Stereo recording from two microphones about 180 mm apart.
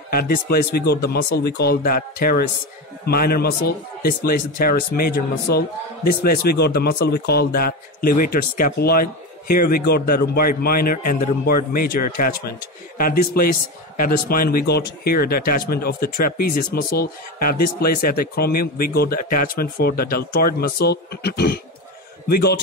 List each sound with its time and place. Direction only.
0.1 s a man's voice: 55° left (ahead or behind)